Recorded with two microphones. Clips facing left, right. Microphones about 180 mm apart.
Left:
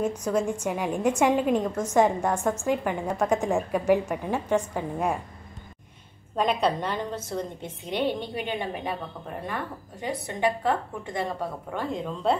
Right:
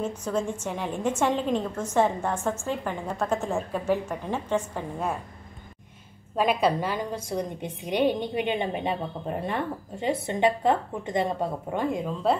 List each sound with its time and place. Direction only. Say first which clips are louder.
0.2 s a woman's voice: left 3 dB; 10° left (ahead or behind)
6.3 s a woman's voice: right 1 dB; 5° right (ahead or behind)